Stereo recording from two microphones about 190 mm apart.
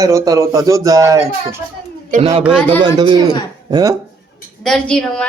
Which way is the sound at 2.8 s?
25° right (ahead or behind).